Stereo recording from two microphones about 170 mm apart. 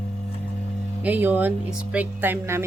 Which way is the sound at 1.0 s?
10° right (ahead or behind).